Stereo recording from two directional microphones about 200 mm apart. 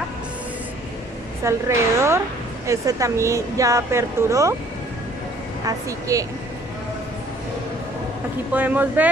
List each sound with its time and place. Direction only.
1.4 s a woman's voice: 15° right (ahead or behind)
5.7 s a woman's voice: 15° right (ahead or behind)
8.5 s a woman's voice: 10° right (ahead or behind)